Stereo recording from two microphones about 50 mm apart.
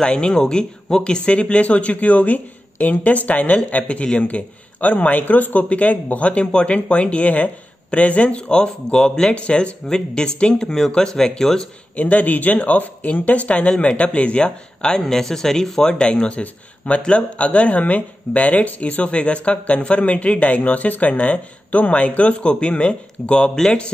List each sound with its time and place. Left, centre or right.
0.0 s speech: centre
12.0 s speech: left
23.5 s speech: centre